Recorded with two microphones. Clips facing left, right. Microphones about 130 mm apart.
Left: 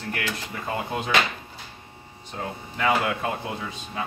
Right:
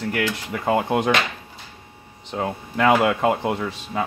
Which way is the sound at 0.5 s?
70° right (ahead or behind).